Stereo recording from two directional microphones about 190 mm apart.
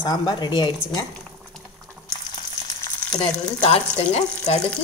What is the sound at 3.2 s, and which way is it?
Speech, 35° left (ahead or behind).